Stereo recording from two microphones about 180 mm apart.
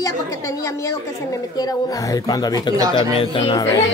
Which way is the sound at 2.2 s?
20° left (ahead or behind).